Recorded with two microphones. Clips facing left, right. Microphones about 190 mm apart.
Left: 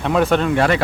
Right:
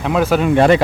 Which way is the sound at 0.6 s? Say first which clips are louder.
Right 6 dB; 25° right (ahead or behind).